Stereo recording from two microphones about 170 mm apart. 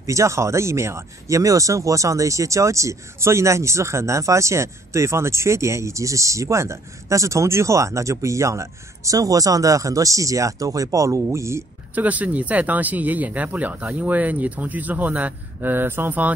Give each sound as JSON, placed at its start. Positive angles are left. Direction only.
{"t": 0.0, "sound": "speech", "side_deg": -15}